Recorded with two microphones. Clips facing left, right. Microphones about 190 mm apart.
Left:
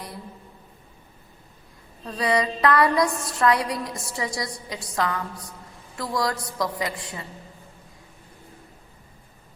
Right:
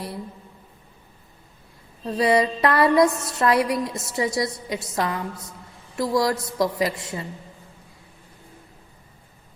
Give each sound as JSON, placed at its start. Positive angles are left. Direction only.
{"t": 2.0, "sound": "music", "side_deg": -25}